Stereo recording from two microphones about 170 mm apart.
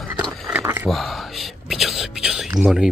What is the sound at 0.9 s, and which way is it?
Whispering, centre (ahead or behind).